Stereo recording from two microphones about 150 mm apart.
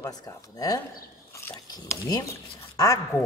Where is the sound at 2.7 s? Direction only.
25° left (ahead or behind).